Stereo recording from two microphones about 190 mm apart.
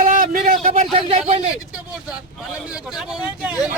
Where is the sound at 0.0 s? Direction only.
45° right (ahead or behind).